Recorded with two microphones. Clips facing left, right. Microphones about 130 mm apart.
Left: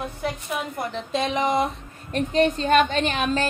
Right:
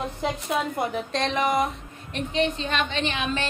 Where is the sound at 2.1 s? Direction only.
45° left (ahead or behind).